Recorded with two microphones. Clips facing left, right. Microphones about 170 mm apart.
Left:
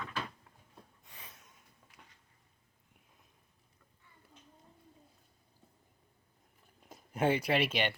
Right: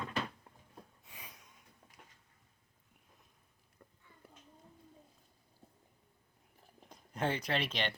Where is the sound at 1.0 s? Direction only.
10° right (ahead or behind).